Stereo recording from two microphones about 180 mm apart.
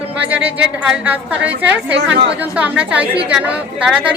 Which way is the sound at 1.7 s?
70° right (ahead or behind).